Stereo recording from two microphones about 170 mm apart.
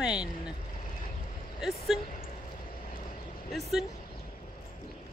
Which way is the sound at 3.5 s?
Centre (ahead or behind).